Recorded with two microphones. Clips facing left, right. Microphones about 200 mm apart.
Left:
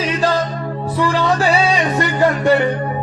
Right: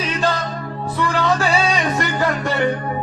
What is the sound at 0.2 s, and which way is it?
Music, 30° left (ahead or behind).